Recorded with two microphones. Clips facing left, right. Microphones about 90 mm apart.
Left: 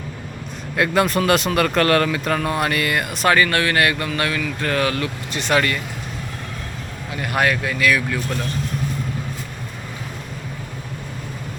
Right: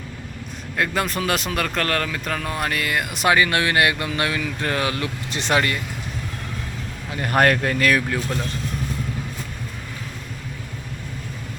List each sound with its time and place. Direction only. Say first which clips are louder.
0.8 s speech: left 5 dB; centre (ahead or behind)
3.2 s speech: left 1 dB; 15° right (ahead or behind)
7.2 s speech: right 2 dB; 40° right (ahead or behind)